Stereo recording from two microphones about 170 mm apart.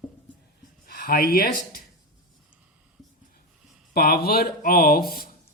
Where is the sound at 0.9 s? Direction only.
60° left (ahead or behind).